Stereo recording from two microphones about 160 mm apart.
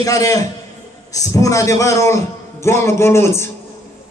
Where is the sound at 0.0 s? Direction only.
20° left (ahead or behind).